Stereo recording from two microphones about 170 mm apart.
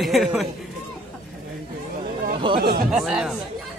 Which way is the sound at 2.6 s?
65° right (ahead or behind).